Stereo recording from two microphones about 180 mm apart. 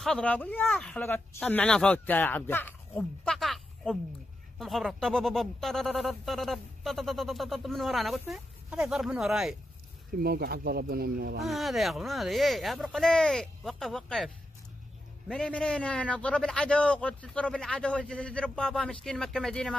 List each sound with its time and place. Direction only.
0.0 s speech: 5° left (ahead or behind)
10.1 s speech: 60° right (ahead or behind)
11.4 s speech: centre (ahead or behind)